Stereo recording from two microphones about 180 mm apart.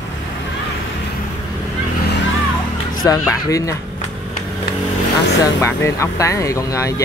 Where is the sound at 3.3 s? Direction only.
15° left (ahead or behind).